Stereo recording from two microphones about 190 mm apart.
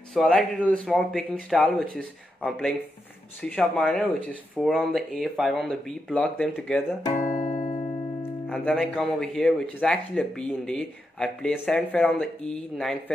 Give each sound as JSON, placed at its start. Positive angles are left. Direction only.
{"t": 0.1, "sound": "a man's voice", "side_deg": 0}
{"t": 7.2, "sound": "music", "side_deg": 40}
{"t": 8.2, "sound": "speech", "side_deg": 5}